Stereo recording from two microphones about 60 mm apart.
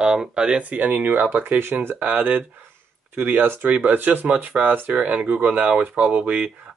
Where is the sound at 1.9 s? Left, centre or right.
Right.